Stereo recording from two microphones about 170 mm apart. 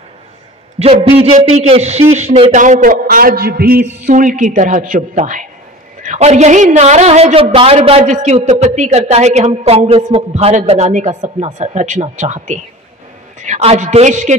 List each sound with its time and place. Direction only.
0.7 s a man's voice: 35° right (ahead or behind); by 3.8 s 65° right (ahead or behind)
4.0 s a man's voice: 50° right (ahead or behind)